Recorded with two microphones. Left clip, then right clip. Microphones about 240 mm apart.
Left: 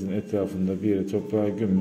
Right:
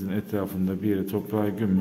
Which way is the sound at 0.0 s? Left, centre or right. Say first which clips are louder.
Left 3 dB; centre.